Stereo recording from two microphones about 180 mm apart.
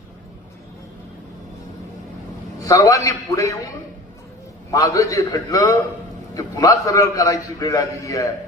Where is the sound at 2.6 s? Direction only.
20° left (ahead or behind).